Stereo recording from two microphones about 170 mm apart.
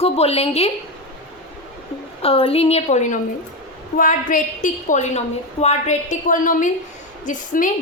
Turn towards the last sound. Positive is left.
turn(degrees=50)  # may be behind; listen again after turning